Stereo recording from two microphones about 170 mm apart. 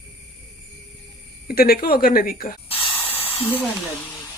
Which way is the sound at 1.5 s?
60° left (ahead or behind).